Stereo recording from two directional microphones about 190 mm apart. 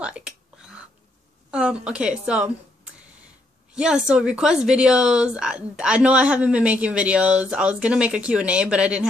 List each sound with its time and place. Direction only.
0.0 s whispering: 5° right (ahead or behind)
1.5 s a woman's voice: 5° right (ahead or behind)
3.7 s a woman's voice: 5° right (ahead or behind)